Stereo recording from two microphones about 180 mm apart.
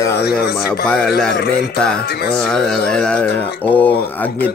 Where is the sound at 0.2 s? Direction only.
60° left (ahead or behind).